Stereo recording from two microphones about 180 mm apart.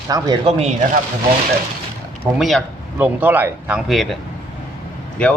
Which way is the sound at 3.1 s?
10° right (ahead or behind).